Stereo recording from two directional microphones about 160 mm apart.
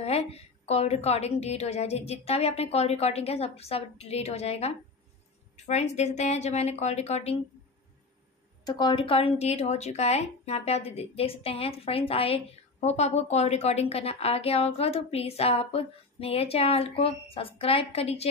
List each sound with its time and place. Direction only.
0.0 s a woman's voice: 40° left (ahead or behind)
8.6 s a woman's voice: 30° left (ahead or behind)